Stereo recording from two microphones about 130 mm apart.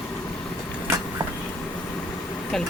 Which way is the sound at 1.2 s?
40° right (ahead or behind).